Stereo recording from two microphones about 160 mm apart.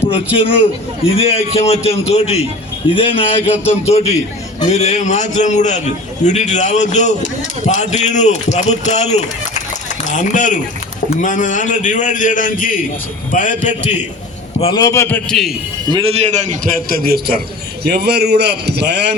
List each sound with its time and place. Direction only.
1.1 s a man's voice: 40° left (ahead or behind)
14.6 s a man's voice: 25° left (ahead or behind)
15.9 s a man's voice: 35° right (ahead or behind); by 17.4 s 70° right (ahead or behind)
17.8 s a man's voice: 90° right